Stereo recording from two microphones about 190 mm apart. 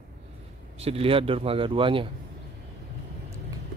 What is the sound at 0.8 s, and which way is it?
A man's voice, 30° right (ahead or behind).